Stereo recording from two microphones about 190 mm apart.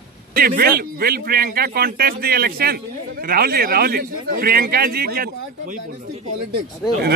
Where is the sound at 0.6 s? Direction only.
55° right (ahead or behind).